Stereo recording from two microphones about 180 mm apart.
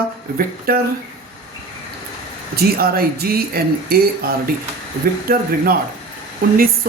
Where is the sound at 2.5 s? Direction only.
55° right (ahead or behind).